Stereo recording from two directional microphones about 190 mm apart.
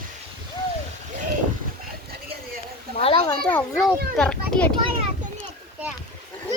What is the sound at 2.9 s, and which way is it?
Children playing, 30° left (ahead or behind).